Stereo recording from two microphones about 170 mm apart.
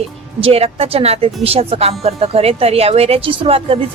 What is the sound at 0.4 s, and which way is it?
A woman's voice, 35° right (ahead or behind).